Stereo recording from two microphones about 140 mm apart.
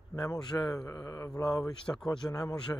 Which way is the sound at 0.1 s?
25° left (ahead or behind).